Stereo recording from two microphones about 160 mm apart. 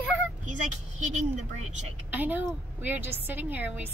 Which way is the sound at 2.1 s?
10° right (ahead or behind).